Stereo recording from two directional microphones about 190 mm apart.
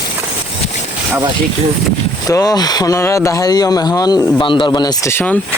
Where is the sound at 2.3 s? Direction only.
20° left (ahead or behind).